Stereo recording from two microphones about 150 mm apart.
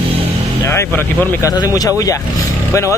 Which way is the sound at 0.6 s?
15° left (ahead or behind).